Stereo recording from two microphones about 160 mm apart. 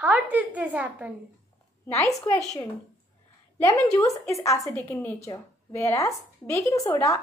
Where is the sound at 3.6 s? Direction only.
20° left (ahead or behind).